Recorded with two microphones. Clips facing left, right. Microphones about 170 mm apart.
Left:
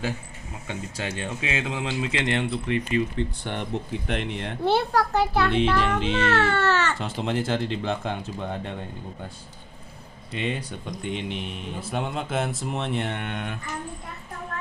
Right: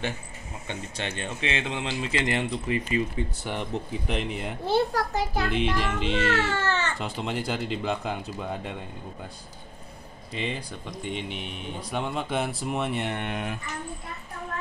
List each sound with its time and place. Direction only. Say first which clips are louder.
0.7 s speech: left 2 dB; 5° left (ahead or behind)
4.6 s a child's voice: left 2 dB; 65° left (ahead or behind)
5.5 s speech: left 4 dB; centre (ahead or behind)
6.3 s a child's voice: left 4 dB; 60° left (ahead or behind)
7.2 s speech: left 5 dB; centre (ahead or behind)
10.3 s speech: left 3 dB; centre (ahead or behind)